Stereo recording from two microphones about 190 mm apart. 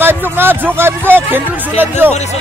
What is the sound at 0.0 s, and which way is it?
Speech, 10° right (ahead or behind).